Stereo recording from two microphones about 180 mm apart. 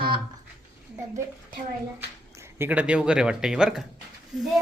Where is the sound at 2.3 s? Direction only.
15° right (ahead or behind).